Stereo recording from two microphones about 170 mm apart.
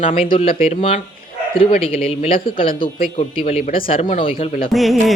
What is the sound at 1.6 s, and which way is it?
Speech, 35° left (ahead or behind).